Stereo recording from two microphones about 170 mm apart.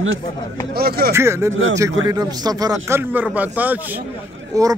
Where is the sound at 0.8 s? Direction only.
65° right (ahead or behind).